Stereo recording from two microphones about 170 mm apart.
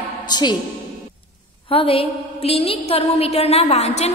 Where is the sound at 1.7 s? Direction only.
35° left (ahead or behind).